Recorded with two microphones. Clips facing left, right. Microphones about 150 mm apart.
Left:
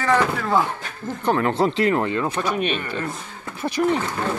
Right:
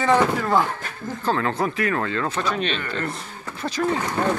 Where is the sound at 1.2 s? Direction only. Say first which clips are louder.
Left 3 dB; 20° left (ahead or behind).